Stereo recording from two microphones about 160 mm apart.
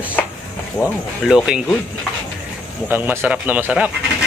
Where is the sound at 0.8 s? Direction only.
15° left (ahead or behind).